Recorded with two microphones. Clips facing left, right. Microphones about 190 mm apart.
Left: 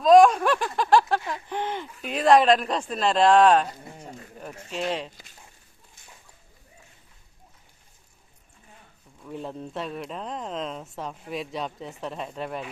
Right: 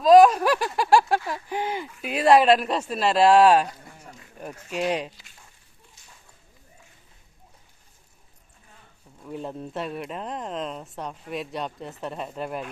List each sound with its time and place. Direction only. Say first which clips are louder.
0.0 s speech: right 1 dB; centre (ahead or behind)
3.8 s dog: left 5 dB; 25° left (ahead or behind)
4.7 s speech: right 3 dB; 10° right (ahead or behind)
9.2 s speech: right 1 dB; 5° right (ahead or behind)